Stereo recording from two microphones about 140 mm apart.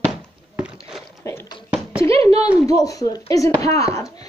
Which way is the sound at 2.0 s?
45° right (ahead or behind).